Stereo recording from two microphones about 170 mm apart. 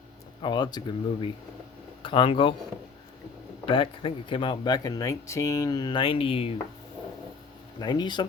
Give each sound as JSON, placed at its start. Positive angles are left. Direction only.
{"t": 0.4, "sound": "speech", "side_deg": 25}
{"t": 3.7, "sound": "speech", "side_deg": 30}
{"t": 7.8, "sound": "speech", "side_deg": 25}